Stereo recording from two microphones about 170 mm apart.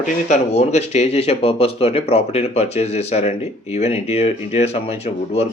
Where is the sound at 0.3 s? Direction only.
40° left (ahead or behind).